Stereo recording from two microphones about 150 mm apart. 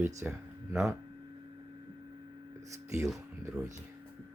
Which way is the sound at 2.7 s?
20° right (ahead or behind).